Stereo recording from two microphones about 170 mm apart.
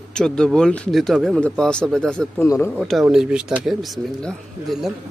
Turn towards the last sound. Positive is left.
turn(degrees=0)  # may be behind; listen again after turning